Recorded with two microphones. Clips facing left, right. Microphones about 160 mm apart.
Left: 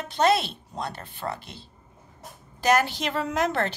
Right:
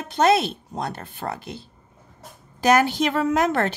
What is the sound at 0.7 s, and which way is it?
Speech, 50° right (ahead or behind).